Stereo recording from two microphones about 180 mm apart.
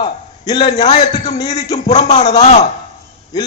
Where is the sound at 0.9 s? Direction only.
40° left (ahead or behind).